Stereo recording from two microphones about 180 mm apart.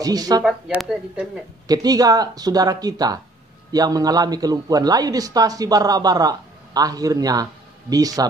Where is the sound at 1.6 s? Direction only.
20° right (ahead or behind).